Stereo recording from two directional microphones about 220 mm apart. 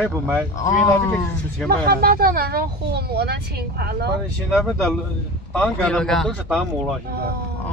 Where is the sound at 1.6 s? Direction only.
45° right (ahead or behind).